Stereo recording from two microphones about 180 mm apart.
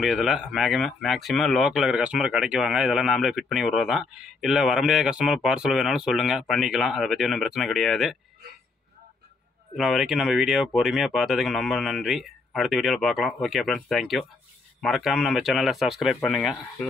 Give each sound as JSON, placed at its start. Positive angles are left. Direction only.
{"t": 0.0, "sound": "speech", "side_deg": -5}
{"t": 9.8, "sound": "speech", "side_deg": 0}